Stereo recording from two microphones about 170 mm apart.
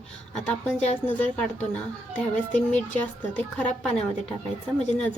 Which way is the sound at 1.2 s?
10° left (ahead or behind).